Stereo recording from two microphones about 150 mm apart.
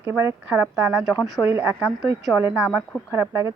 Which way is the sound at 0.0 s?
15° right (ahead or behind).